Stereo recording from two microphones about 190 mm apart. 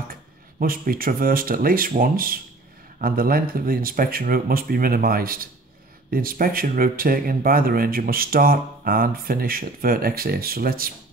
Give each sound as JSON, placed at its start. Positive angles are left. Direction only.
{"t": 0.1, "sound": "speech", "side_deg": -50}